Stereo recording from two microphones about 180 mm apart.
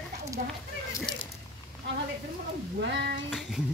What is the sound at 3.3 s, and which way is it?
Music, 5° right (ahead or behind).